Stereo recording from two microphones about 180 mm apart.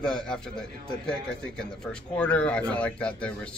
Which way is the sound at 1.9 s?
5° left (ahead or behind).